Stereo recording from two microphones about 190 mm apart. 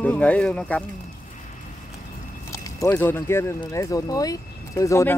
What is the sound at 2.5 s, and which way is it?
Speech, 15° left (ahead or behind).